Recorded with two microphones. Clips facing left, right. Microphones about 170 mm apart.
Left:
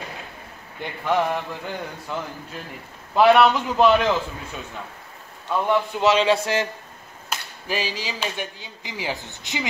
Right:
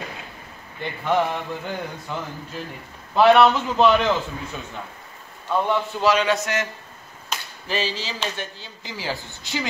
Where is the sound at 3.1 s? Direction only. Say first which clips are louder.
Right 1 dB; 10° left (ahead or behind).